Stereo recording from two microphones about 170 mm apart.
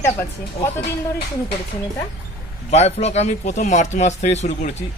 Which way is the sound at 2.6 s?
40° left (ahead or behind).